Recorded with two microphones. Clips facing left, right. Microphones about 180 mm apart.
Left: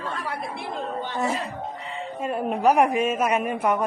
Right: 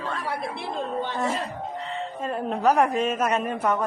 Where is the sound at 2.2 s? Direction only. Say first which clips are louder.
Left 2 dB; 10° left (ahead or behind).